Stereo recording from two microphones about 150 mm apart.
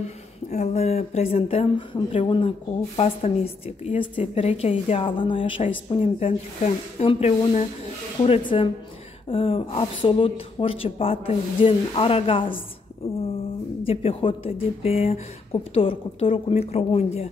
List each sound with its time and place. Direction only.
0.0 s speech: 50° left (ahead or behind)
8.3 s speech: 35° left (ahead or behind)
13.8 s speech: 40° left (ahead or behind)